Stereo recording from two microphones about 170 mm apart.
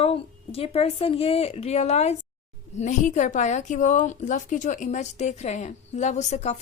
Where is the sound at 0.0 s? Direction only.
35° left (ahead or behind).